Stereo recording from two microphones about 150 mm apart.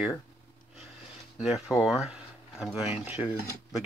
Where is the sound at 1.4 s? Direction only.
5° right (ahead or behind).